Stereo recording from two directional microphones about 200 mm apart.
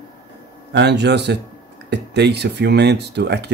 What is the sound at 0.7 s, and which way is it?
Speech, 60° right (ahead or behind).